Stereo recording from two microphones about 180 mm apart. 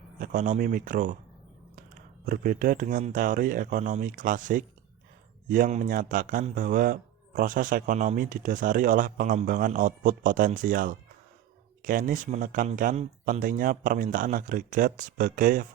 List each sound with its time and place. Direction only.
0.2 s speech: 45° right (ahead or behind)